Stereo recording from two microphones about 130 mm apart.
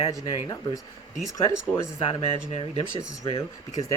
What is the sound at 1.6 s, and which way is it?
Speech, 15° left (ahead or behind).